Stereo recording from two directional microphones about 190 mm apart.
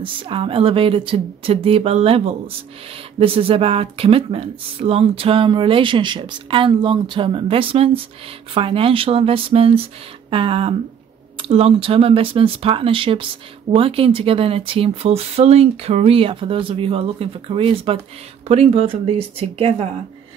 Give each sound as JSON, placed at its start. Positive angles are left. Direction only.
{"t": 0.0, "sound": "speech", "side_deg": -25}